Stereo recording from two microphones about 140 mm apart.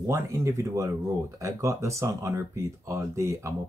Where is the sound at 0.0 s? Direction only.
25° right (ahead or behind).